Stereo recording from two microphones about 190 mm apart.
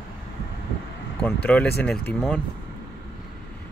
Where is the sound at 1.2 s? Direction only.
5° left (ahead or behind).